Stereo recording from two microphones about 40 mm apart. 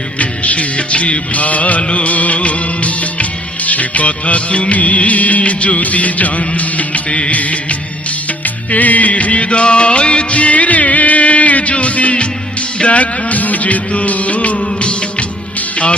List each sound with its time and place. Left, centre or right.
0.2 s music of bollywood: left
8.4 s music: left